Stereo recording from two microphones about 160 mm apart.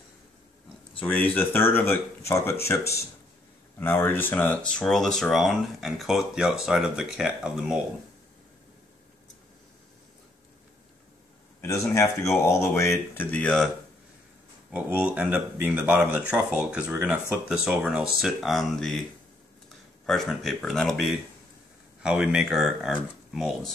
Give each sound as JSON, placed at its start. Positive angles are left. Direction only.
{"t": 1.0, "sound": "speech", "side_deg": 10}
{"t": 11.6, "sound": "speech", "side_deg": 20}
{"t": 14.7, "sound": "speech", "side_deg": -10}
{"t": 20.1, "sound": "speech", "side_deg": 0}